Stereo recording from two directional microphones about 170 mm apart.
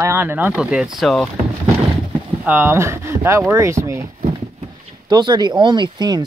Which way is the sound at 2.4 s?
10° right (ahead or behind).